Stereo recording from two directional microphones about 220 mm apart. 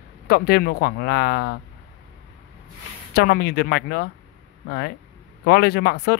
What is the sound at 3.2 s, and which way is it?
Speech, 45° left (ahead or behind).